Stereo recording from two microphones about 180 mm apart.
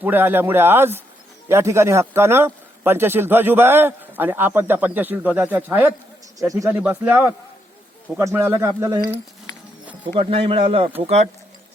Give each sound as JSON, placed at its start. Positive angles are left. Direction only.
{"t": 0.0, "sound": "a man's voice", "side_deg": -10}
{"t": 10.2, "sound": "speech", "side_deg": -30}